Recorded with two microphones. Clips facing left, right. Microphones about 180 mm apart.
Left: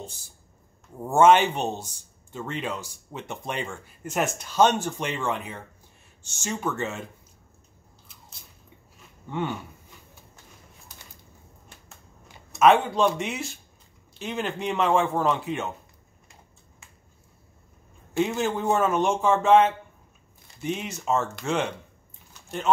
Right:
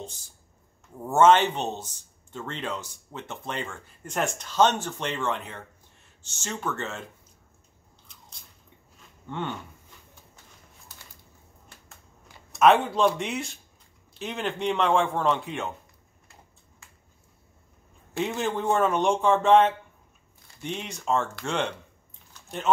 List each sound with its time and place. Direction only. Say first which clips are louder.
1.0 s speech: left 1 dB; 10° left (ahead or behind)
8.1 s biting: even; 5° left (ahead or behind)
9.3 s speech: left 3 dB; 10° left (ahead or behind)
12.5 s a man's voice: left 1 dB; centre (ahead or behind)
18.1 s a man's voice: left 3 dB; centre (ahead or behind)